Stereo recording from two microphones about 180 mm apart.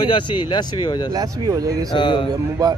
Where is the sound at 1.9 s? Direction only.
25° left (ahead or behind).